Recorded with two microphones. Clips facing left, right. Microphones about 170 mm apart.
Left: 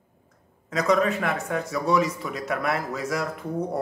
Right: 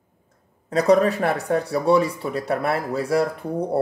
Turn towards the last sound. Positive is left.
turn(degrees=-30)  # may be behind; listen again after turning